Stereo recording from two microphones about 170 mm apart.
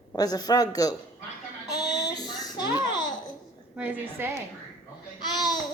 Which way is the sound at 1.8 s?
80° left.